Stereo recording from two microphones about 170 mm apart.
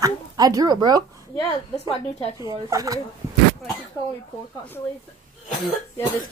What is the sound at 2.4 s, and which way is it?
Speech, 20° right (ahead or behind).